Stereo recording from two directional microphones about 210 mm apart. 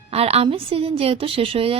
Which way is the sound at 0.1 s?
30° right (ahead or behind).